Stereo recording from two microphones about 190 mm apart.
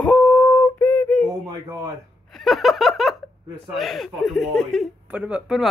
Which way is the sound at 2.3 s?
Centre (ahead or behind).